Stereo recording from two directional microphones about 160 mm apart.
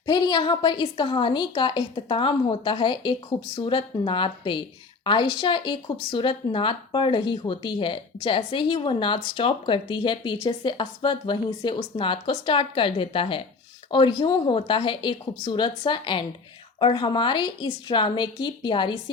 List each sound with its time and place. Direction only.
0.0 s a woman's voice: 25° left (ahead or behind)